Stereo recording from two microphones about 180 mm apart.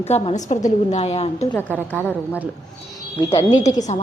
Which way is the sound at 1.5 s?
10° left (ahead or behind).